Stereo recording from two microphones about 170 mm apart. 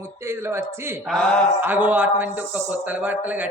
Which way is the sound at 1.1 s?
5° left (ahead or behind).